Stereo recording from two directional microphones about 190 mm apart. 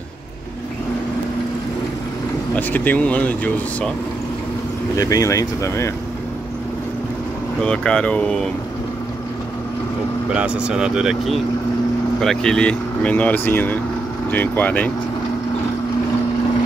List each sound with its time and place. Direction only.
2.5 s speech: 10° left (ahead or behind)
4.9 s speech: 15° left (ahead or behind)
7.6 s speech: 5° left (ahead or behind)
10.3 s speech: 5° right (ahead or behind)